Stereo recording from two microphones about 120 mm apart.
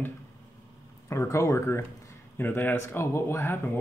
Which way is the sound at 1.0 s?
25° left (ahead or behind).